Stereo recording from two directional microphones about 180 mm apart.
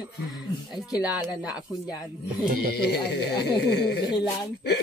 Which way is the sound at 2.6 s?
65° left (ahead or behind).